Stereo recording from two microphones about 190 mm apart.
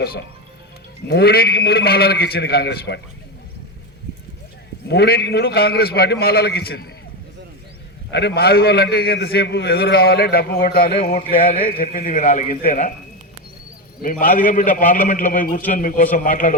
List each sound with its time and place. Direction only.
1.0 s a man's voice: 55° left (ahead or behind)
4.9 s a man's voice: 55° left (ahead or behind)
8.1 s a man's voice: 60° left (ahead or behind); by 12.9 s 40° left (ahead or behind)
14.0 s a man's voice: 45° left (ahead or behind)